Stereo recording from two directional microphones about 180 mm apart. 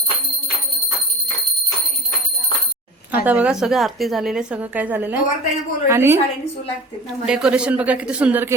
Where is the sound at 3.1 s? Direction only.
10° right (ahead or behind).